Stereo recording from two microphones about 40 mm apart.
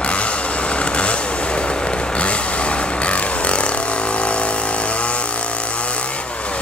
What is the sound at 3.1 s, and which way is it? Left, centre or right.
Vehicle, left.